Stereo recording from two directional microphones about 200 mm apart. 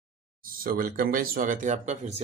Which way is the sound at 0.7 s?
45° right (ahead or behind).